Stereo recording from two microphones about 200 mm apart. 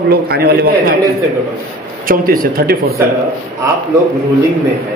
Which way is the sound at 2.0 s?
45° right (ahead or behind).